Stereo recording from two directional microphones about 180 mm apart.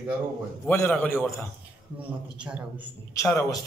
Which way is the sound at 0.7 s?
10° left (ahead or behind).